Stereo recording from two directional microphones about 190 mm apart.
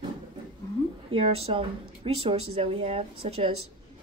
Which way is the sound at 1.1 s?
30° right (ahead or behind).